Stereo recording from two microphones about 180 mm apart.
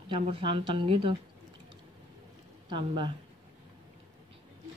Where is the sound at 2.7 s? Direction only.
25° right (ahead or behind).